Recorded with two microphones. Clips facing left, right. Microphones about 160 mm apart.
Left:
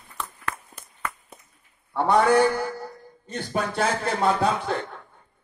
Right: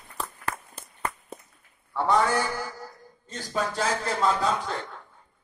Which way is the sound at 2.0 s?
60° left (ahead or behind).